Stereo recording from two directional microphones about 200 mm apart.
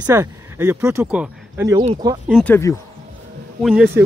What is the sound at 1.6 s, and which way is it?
Speech, 25° right (ahead or behind).